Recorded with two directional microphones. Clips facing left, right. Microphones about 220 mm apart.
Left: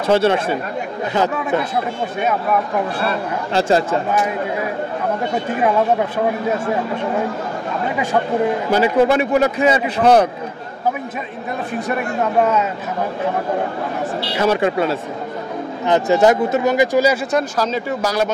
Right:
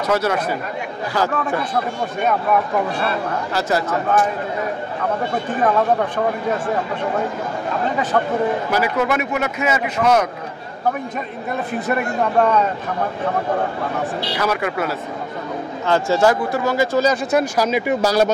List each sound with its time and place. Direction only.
0.0 s speech: 30° left (ahead or behind)
3.5 s speech: 25° left (ahead or behind)
5.3 s speech: 10° left (ahead or behind)
8.6 s a man's voice: 30° left (ahead or behind)
11.9 s a man's voice: 5° left (ahead or behind)
14.3 s speech: 25° left (ahead or behind)
17.3 s speech: 10° right (ahead or behind)
18.0 s speech: 35° right (ahead or behind)